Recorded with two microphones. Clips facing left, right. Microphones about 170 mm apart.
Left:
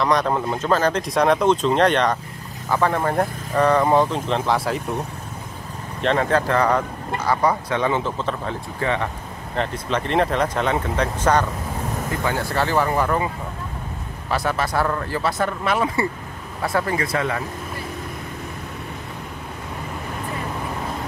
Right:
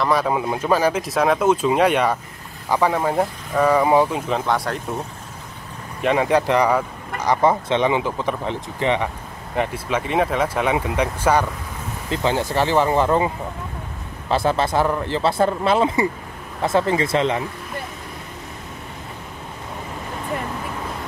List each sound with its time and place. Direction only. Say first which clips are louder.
0.0 s speech: even; 5° right (ahead or behind)
4.4 s speech: left 1 dB; centre (ahead or behind)
5.9 s speech: right 2 dB; 10° right (ahead or behind)
9.6 s speech: right 1 dB; 10° right (ahead or behind)
12.1 s speech: right 5 dB; 25° right (ahead or behind)
14.3 s speech: right 3 dB; 25° right (ahead or behind)